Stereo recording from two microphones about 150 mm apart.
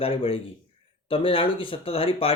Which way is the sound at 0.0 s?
40° left (ahead or behind).